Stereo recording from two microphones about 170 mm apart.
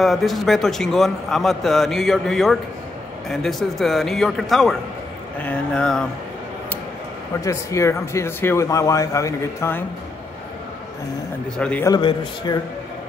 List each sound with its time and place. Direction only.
0.0 s a man's voice: centre (ahead or behind)
7.4 s speech: 15° left (ahead or behind)
11.5 s a man's voice: 5° left (ahead or behind)
11.8 s a man's voice: 25° left (ahead or behind)